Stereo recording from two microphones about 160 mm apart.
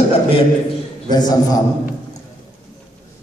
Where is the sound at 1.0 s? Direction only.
25° left (ahead or behind).